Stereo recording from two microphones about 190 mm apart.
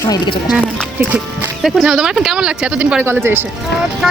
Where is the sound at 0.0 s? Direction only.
20° left (ahead or behind).